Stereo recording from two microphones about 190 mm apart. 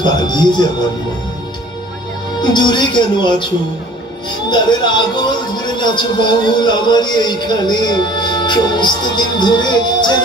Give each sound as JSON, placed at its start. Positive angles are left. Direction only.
{"t": 0.0, "sound": "speech", "side_deg": 20}
{"t": 2.4, "sound": "speech", "side_deg": 25}
{"t": 4.4, "sound": "speech", "side_deg": 25}